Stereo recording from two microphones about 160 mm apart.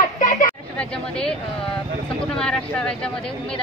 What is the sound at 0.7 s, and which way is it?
Speech, 5° left (ahead or behind).